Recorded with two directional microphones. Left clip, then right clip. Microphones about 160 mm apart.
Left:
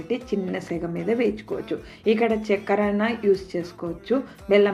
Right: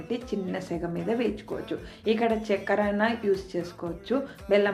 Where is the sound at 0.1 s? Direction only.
10° left (ahead or behind).